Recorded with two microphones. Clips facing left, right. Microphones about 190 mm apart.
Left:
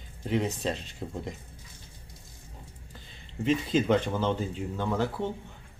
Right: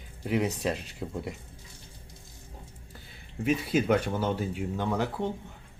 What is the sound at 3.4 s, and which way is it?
Speech, 10° right (ahead or behind).